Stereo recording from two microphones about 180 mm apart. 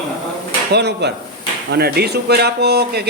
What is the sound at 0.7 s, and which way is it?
A man's voice, 70° right (ahead or behind).